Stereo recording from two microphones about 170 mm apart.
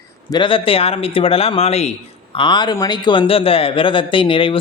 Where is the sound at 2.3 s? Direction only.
25° left (ahead or behind).